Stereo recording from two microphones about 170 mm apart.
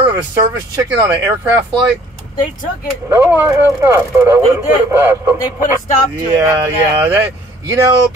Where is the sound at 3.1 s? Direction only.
10° right (ahead or behind).